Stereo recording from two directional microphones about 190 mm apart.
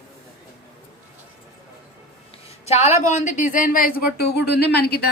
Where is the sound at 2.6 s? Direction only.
35° left (ahead or behind); by 5.1 s 60° left (ahead or behind).